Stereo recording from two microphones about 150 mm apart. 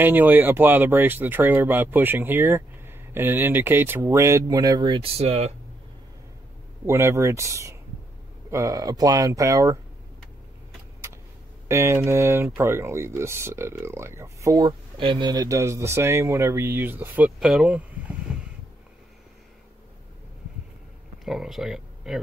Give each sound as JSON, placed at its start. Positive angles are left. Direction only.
{"t": 0.0, "sound": "speech", "side_deg": -10}
{"t": 6.9, "sound": "speech", "side_deg": -15}
{"t": 11.6, "sound": "speech", "side_deg": -15}
{"t": 14.7, "sound": "speech", "side_deg": -35}
{"t": 21.2, "sound": "speech", "side_deg": 0}